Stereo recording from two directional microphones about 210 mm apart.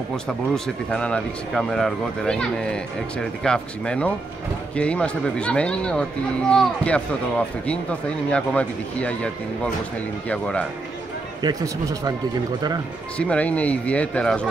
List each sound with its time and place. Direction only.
0.9 s speech: 5° left (ahead or behind)
11.4 s speech: 15° right (ahead or behind)
13.2 s speech: 5° left (ahead or behind)